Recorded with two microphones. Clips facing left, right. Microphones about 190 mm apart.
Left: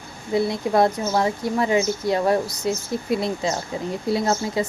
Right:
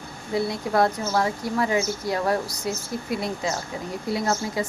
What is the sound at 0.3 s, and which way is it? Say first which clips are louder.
A woman's voice: left 3 dB; 20° left (ahead or behind).